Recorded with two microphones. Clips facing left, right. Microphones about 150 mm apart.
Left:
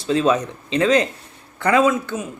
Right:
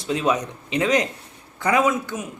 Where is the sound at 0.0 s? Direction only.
15° right (ahead or behind).